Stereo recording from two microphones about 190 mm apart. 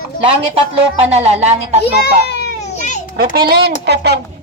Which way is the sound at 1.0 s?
35° right (ahead or behind).